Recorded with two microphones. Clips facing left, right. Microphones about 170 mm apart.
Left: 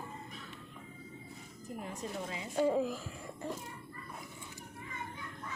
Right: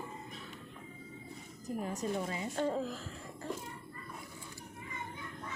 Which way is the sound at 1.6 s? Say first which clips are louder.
Right 5 dB; 40° right (ahead or behind).